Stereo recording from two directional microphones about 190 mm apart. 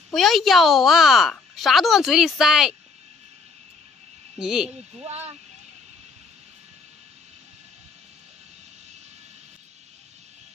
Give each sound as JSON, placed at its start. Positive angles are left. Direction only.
{"t": 0.1, "sound": "speech", "side_deg": 0}
{"t": 4.4, "sound": "speech", "side_deg": -5}
{"t": 5.0, "sound": "speech", "side_deg": -35}